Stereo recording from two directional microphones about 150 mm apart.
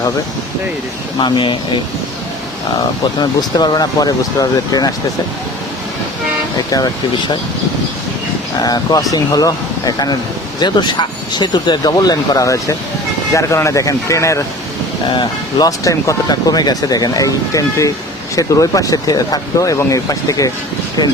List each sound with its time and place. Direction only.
1.2 s speech: 30° left (ahead or behind)
3.2 s speech: 30° left (ahead or behind)
6.7 s speech: 25° left (ahead or behind)
8.6 s speech: 25° left (ahead or behind)
15.0 s speech: 30° left (ahead or behind)